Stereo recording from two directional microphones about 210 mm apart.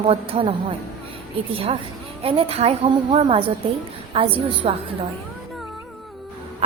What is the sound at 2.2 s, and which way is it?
A woman's voice, 25° right (ahead or behind).